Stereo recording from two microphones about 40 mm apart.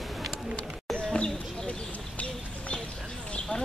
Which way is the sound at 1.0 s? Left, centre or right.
Left.